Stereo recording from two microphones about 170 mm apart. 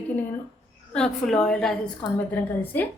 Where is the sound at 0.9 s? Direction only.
5° left (ahead or behind).